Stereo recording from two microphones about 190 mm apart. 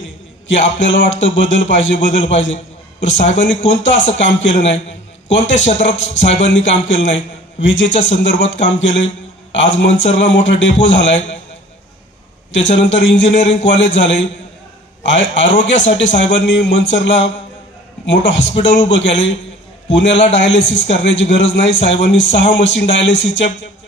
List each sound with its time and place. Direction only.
0.7 s a man's voice: 75° left (ahead or behind)
12.5 s a man's voice: 75° left (ahead or behind)